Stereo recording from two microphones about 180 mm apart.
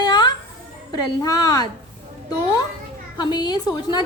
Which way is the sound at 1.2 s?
20° left (ahead or behind).